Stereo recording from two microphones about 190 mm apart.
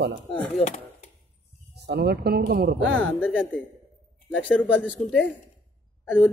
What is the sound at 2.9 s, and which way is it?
Speech, 5° left (ahead or behind).